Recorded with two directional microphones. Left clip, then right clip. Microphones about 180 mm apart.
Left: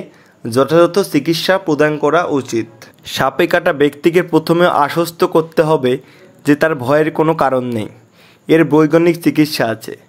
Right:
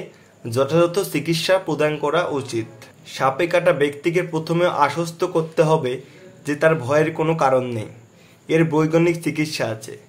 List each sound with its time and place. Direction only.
0.5 s speech: 40° left (ahead or behind)
3.1 s speech: 50° left (ahead or behind)